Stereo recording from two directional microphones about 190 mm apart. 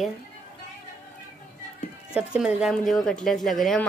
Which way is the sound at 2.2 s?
5° right (ahead or behind).